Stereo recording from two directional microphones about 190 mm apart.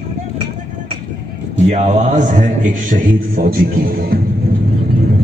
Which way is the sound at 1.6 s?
35° right (ahead or behind).